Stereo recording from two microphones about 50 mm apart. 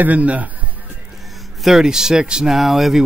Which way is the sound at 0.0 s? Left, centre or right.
Right.